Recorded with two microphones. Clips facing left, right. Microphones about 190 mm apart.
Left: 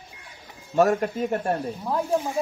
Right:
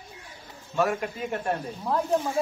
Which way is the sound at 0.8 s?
40° left (ahead or behind).